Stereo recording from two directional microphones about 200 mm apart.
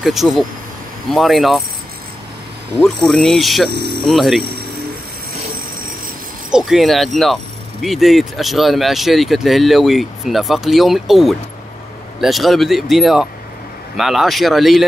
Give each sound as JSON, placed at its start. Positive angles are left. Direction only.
{"t": 0.0, "sound": "speech", "side_deg": 0}
{"t": 2.8, "sound": "speech", "side_deg": 5}
{"t": 3.7, "sound": "speech", "side_deg": -55}
{"t": 4.0, "sound": "speech", "side_deg": 0}
{"t": 6.5, "sound": "speech", "side_deg": 0}